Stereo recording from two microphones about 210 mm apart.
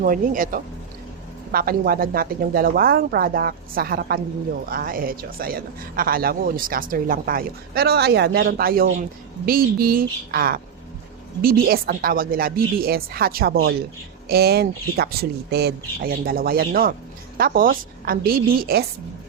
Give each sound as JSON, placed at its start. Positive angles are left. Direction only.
{"t": 0.0, "sound": "speech", "side_deg": -40}